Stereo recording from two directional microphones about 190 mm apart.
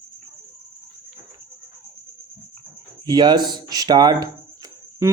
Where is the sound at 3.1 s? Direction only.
20° right (ahead or behind).